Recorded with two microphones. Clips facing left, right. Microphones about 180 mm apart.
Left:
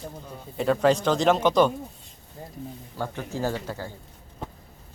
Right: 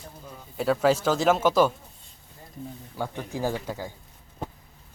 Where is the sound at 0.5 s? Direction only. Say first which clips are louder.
Left 1 dB; 5° right (ahead or behind).